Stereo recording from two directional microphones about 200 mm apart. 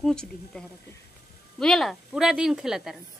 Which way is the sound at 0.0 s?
5° left (ahead or behind).